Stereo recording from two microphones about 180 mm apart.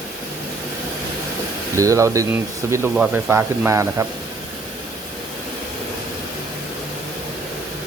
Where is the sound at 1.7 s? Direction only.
15° right (ahead or behind).